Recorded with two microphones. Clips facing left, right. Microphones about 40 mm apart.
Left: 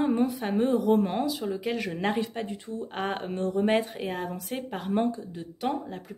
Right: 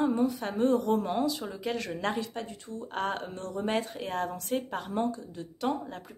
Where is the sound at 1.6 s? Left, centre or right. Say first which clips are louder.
Left 3 dB; centre.